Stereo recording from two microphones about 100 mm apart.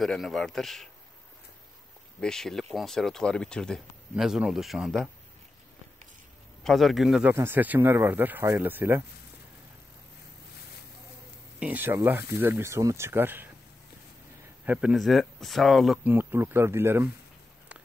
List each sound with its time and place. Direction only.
0.0 s speech: centre (ahead or behind)
2.1 s speech: 5° left (ahead or behind)
4.1 s speech: 10° right (ahead or behind)
6.6 s speech: centre (ahead or behind)
7.2 s speech: 20° right (ahead or behind)
11.6 s speech: 20° right (ahead or behind)
14.6 s speech: 15° right (ahead or behind)
16.0 s speech: 20° right (ahead or behind)